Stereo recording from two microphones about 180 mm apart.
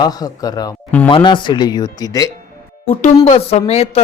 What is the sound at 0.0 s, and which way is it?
Speech, 20° left (ahead or behind).